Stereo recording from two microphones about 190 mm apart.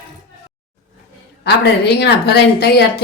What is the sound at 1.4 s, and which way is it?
A woman's voice, 60° left (ahead or behind).